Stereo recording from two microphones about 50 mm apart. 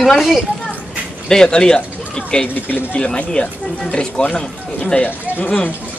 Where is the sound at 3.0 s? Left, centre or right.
Left.